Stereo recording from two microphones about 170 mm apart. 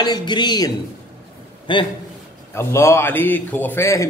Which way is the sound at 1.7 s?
30° left (ahead or behind).